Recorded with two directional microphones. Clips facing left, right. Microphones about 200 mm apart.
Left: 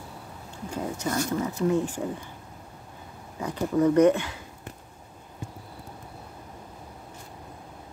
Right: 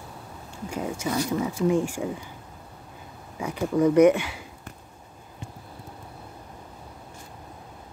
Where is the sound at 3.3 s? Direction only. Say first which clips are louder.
Right 1 dB; 10° right (ahead or behind).